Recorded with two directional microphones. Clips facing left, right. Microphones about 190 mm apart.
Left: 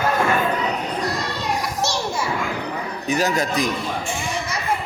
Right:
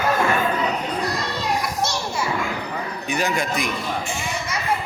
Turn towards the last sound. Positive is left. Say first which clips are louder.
# left 3 dB
turn(degrees=40)  # may be behind; listen again after turning